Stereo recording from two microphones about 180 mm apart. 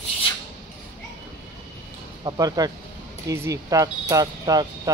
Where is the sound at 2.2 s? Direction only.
20° right (ahead or behind).